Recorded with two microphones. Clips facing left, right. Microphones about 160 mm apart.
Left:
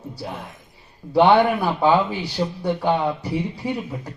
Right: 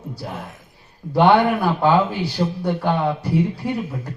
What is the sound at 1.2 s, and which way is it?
A man's voice, 15° left (ahead or behind).